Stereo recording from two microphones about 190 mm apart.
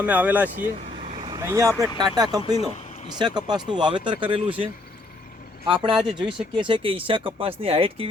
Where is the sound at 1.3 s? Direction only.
15° right (ahead or behind).